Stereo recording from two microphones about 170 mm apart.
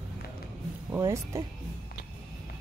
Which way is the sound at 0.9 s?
15° right (ahead or behind).